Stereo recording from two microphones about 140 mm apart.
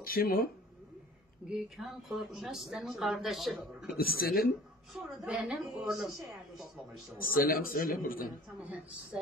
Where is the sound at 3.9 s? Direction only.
90° left.